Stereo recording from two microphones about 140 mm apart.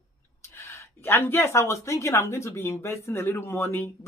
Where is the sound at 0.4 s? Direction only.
20° left (ahead or behind).